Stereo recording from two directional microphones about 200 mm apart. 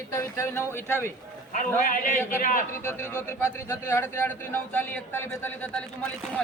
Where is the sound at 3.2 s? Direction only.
15° left (ahead or behind).